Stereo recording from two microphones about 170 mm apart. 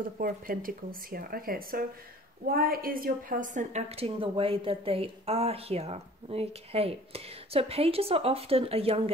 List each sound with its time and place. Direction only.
0.2 s a woman's voice: 55° right (ahead or behind); by 9.1 s 35° right (ahead or behind)